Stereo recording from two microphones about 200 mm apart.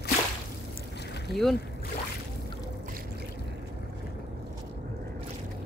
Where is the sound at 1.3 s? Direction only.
Centre (ahead or behind).